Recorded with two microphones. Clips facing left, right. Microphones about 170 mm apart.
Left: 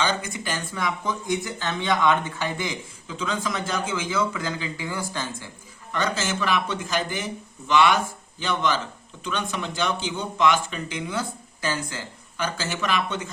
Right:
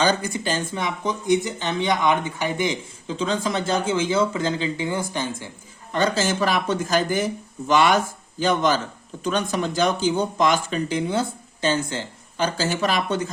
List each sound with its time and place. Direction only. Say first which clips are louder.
0.0 s speech: right 5 dB; 35° right (ahead or behind); by 5.5 s 20° right (ahead or behind)
5.9 s speech: right 5 dB; 35° right (ahead or behind)